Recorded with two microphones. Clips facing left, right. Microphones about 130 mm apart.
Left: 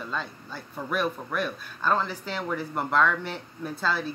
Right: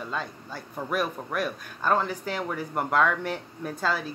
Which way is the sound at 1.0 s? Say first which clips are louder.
Left 1 dB; 10° right (ahead or behind).